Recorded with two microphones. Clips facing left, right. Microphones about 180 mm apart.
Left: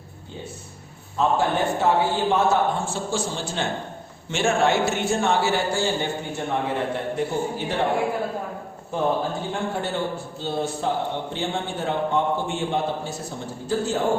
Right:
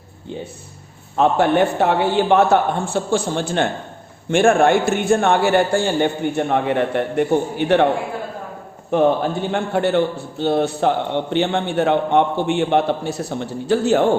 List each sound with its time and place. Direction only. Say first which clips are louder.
1.1 s a man's voice: right 6 dB; 65° right (ahead or behind)
8.9 s a man's voice: right 7 dB; 70° right (ahead or behind)